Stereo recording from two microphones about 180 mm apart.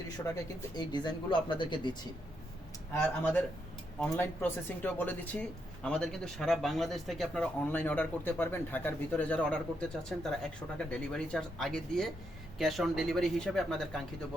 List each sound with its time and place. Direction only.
0.4 s speech: 25° left (ahead or behind)
2.9 s speech: 10° left (ahead or behind)